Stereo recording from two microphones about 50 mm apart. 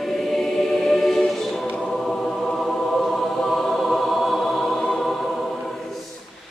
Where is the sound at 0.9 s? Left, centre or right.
Centre.